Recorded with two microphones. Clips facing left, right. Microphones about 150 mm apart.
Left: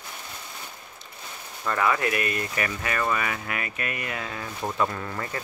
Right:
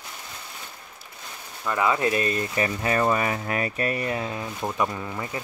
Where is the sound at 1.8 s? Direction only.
25° right (ahead or behind).